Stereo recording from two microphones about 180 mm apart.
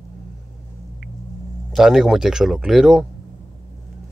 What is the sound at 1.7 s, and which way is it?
Speech, centre (ahead or behind).